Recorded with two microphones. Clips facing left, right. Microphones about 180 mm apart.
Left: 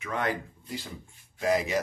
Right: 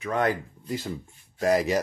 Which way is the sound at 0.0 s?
40° right (ahead or behind).